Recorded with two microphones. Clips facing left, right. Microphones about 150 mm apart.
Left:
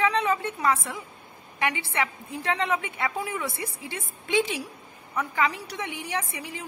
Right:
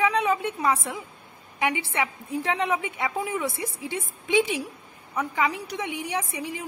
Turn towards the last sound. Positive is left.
turn(degrees=-15)  # may be behind; listen again after turning